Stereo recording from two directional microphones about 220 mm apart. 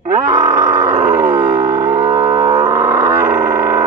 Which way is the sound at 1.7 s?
10° right (ahead or behind).